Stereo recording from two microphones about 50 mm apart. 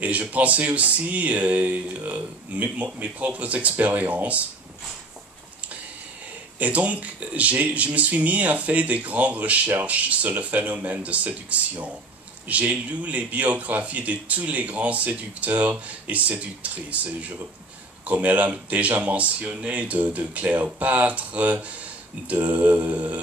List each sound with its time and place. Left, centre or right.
0.0 s speech: right
6.6 s speech: right